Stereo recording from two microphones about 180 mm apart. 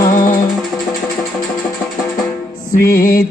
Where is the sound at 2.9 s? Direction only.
50° left (ahead or behind).